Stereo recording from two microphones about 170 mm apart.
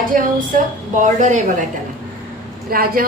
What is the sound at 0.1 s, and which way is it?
A woman's voice, 55° right (ahead or behind).